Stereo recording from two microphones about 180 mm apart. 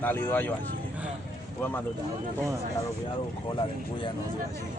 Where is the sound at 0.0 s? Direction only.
10° left (ahead or behind).